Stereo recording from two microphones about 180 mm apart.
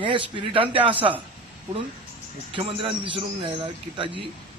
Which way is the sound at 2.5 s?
30° right (ahead or behind).